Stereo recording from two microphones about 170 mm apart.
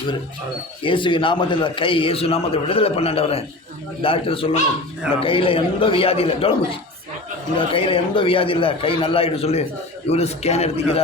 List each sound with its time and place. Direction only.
0.8 s a man's voice: 30° left (ahead or behind)